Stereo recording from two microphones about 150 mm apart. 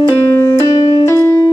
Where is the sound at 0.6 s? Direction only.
30° left (ahead or behind).